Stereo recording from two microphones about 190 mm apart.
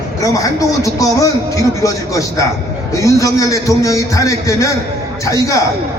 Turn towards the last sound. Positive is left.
turn(degrees=15)  # may be behind; listen again after turning